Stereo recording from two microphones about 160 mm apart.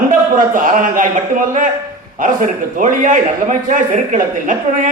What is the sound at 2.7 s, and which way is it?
A man's voice, 55° right (ahead or behind).